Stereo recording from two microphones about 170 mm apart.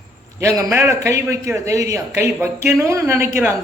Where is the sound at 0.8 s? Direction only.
20° right (ahead or behind).